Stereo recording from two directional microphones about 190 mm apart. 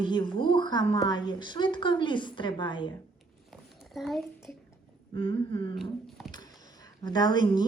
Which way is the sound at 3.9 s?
Centre (ahead or behind).